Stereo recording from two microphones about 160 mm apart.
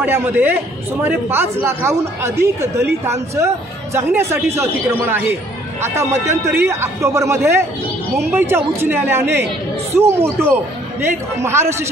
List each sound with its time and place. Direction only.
0.0 s speech: 10° right (ahead or behind)
5.8 s speech: 15° right (ahead or behind)